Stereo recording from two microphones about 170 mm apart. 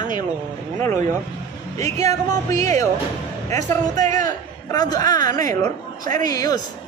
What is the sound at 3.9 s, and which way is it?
Speech, 45° right (ahead or behind).